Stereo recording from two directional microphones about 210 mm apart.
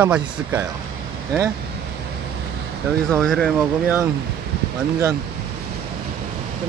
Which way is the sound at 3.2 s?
5° left (ahead or behind).